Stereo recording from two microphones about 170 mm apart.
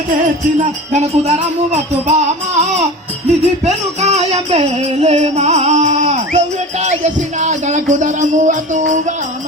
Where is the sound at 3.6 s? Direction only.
40° right (ahead or behind).